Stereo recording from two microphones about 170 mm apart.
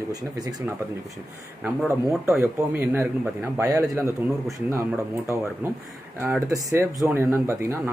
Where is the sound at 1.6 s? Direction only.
10° right (ahead or behind).